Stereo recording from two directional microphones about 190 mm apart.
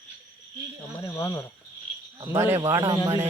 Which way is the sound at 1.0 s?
15° left (ahead or behind).